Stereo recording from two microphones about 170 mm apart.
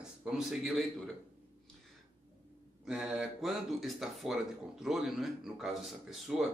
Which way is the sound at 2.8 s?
5° right (ahead or behind).